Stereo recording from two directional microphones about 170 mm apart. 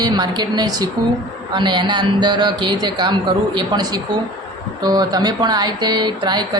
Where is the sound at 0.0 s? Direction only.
25° right (ahead or behind).